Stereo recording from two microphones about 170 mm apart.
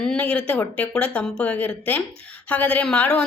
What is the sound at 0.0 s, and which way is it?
Speech, 5° left (ahead or behind).